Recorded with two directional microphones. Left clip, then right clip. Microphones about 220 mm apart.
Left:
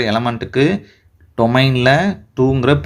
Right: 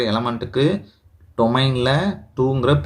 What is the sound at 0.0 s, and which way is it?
Speech, 40° left (ahead or behind).